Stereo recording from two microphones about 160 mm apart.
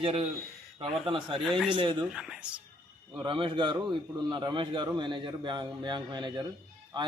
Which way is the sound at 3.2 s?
30° right (ahead or behind).